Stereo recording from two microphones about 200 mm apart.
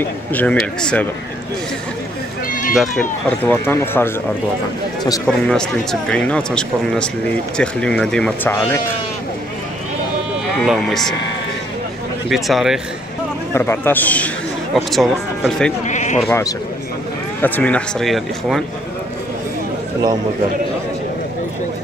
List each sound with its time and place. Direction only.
0.3 s speech: 5° left (ahead or behind)
2.4 s speech: 45° left (ahead or behind)
2.7 s speech: centre (ahead or behind); by 5.3 s 20° left (ahead or behind)
5.5 s speech: 5° left (ahead or behind)
10.6 s speech: centre (ahead or behind)
12.3 s speech: centre (ahead or behind)
13.5 s speech: 10° left (ahead or behind)
15.8 s bleat: 35° left (ahead or behind)
16.3 s speech: 15° left (ahead or behind)